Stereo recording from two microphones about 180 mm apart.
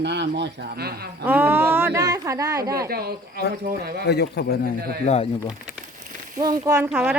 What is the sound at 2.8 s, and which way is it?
Speech, 60° right (ahead or behind).